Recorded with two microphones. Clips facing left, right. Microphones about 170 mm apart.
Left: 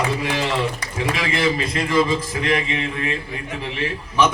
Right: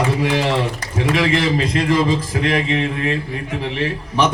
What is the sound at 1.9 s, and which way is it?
Speech, 35° right (ahead or behind).